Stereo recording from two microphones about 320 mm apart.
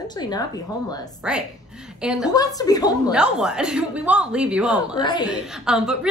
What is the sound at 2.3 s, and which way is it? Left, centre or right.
Speech, centre.